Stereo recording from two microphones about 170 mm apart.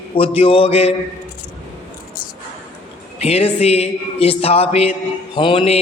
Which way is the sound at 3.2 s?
35° left (ahead or behind).